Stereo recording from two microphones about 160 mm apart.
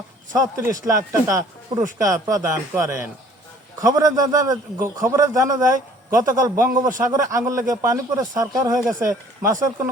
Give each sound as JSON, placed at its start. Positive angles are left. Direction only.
{"t": 0.3, "sound": "a man's voice", "side_deg": -20}